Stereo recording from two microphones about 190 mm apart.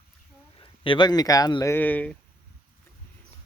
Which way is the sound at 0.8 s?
25° left (ahead or behind).